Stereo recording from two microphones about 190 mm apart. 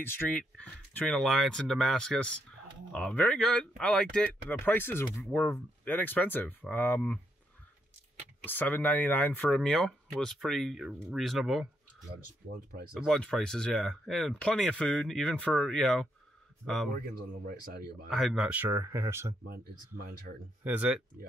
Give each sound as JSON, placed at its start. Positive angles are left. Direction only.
{"t": 0.0, "sound": "speech", "side_deg": 10}
{"t": 8.5, "sound": "speech", "side_deg": 10}
{"t": 12.9, "sound": "speech", "side_deg": 0}
{"t": 16.9, "sound": "speech", "side_deg": -55}
{"t": 18.1, "sound": "speech", "side_deg": 0}
{"t": 19.5, "sound": "speech", "side_deg": -55}
{"t": 20.6, "sound": "speech", "side_deg": -10}